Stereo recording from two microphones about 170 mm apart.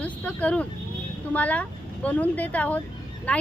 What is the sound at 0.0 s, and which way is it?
Speech, 10° left (ahead or behind).